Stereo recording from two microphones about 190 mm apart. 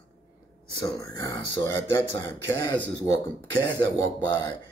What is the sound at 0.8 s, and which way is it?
Speech, 20° left (ahead or behind).